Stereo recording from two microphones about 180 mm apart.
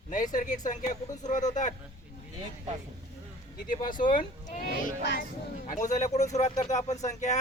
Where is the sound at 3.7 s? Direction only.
45° left (ahead or behind).